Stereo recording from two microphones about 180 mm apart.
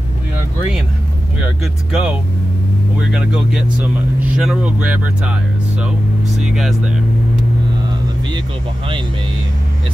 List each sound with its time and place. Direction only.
1.6 s speech: 5° right (ahead or behind)